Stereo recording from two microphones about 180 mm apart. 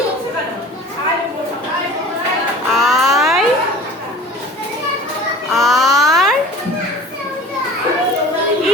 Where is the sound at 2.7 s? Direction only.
Centre (ahead or behind).